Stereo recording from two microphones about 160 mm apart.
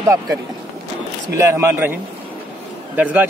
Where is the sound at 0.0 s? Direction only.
20° right (ahead or behind).